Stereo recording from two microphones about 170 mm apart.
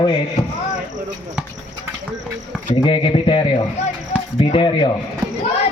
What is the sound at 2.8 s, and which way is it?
A man's voice, 30° left (ahead or behind).